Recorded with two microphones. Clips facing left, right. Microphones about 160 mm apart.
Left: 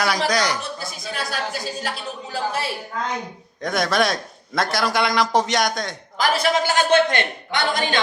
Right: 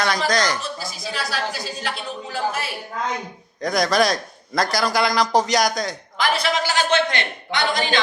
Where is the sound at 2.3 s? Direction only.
30° left (ahead or behind).